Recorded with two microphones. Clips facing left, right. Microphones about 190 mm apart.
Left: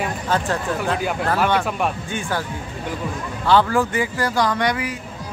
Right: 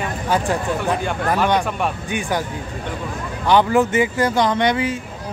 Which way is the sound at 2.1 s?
15° right (ahead or behind).